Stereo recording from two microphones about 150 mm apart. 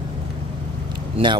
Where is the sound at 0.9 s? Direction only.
30° right (ahead or behind).